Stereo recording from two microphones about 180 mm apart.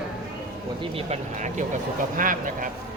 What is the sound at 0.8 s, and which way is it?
Speech, 35° right (ahead or behind).